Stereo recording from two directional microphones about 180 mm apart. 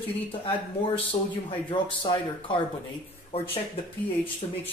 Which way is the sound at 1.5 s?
25° left (ahead or behind).